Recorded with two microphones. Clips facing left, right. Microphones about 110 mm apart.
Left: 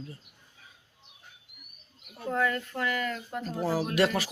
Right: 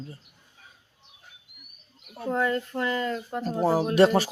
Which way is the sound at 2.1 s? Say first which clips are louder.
Right 3 dB; 25° right (ahead or behind).